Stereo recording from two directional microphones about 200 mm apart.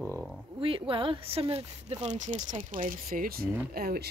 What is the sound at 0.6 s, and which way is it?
Speech, 25° right (ahead or behind).